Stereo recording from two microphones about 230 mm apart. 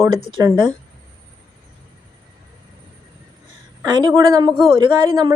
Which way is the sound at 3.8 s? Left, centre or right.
Centre.